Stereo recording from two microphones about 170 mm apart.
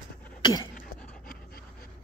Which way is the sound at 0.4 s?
25° left (ahead or behind).